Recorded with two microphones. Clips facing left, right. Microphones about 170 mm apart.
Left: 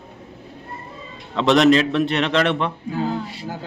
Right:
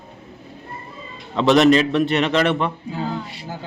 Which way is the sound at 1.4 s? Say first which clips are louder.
Right 1 dB; centre (ahead or behind).